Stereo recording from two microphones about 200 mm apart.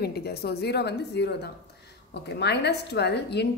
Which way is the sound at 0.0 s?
50° left (ahead or behind).